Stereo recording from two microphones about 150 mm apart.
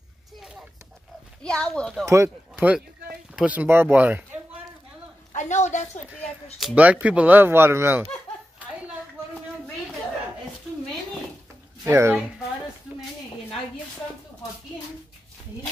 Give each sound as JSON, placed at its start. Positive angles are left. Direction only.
{"t": 1.4, "sound": "speech", "side_deg": 5}
{"t": 2.0, "sound": "speech", "side_deg": -15}
{"t": 5.3, "sound": "a sound", "side_deg": 50}
{"t": 6.6, "sound": "speech", "side_deg": -10}
{"t": 11.8, "sound": "speech", "side_deg": -15}